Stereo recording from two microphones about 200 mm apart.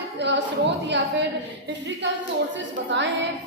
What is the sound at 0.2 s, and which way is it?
Speech, 60° right (ahead or behind).